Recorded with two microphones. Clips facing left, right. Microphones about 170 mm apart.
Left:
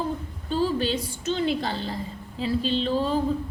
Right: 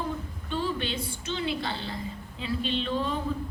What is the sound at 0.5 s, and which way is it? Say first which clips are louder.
A woman's voice: left 6 dB; 35° left (ahead or behind).